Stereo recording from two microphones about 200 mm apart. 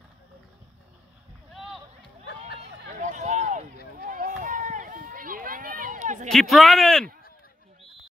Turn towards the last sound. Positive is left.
turn(degrees=0)  # may be behind; listen again after turning